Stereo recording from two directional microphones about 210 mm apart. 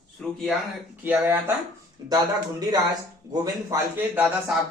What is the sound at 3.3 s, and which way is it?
A man's voice, 15° right (ahead or behind).